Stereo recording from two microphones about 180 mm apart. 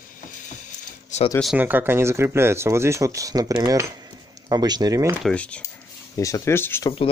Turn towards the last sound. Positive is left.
turn(degrees=15)  # may be behind; listen again after turning